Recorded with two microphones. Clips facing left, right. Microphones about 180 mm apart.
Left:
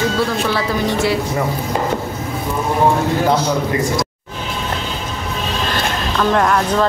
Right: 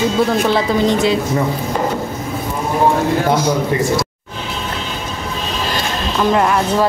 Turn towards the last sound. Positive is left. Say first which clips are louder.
# right 1 dB
turn(degrees=-5)  # may be behind; listen again after turning